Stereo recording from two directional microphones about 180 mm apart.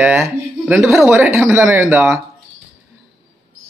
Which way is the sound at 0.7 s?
Centre (ahead or behind).